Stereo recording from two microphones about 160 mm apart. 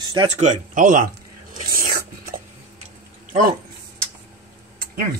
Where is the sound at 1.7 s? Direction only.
65° right (ahead or behind).